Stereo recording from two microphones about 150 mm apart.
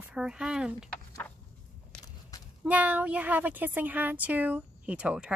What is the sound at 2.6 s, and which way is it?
Speech, 10° right (ahead or behind).